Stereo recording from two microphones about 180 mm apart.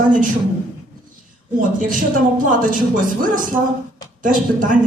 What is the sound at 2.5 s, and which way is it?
A woman's voice, 50° right (ahead or behind).